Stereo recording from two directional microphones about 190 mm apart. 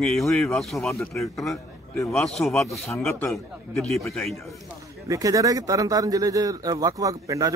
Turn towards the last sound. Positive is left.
turn(degrees=-20)  # may be behind; listen again after turning